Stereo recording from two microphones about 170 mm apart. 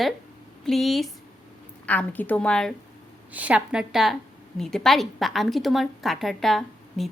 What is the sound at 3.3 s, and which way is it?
A woman's voice, 5° right (ahead or behind).